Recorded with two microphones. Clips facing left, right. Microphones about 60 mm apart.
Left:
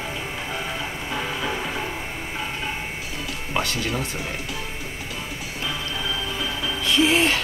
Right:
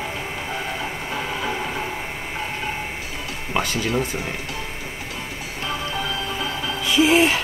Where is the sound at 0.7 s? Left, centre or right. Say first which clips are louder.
Right 1 dB; right.